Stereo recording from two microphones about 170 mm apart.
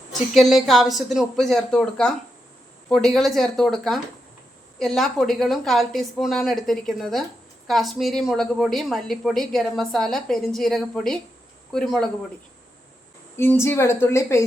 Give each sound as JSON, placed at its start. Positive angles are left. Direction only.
{"t": 0.1, "sound": "a woman's voice", "side_deg": 0}
{"t": 13.3, "sound": "a woman's voice", "side_deg": 15}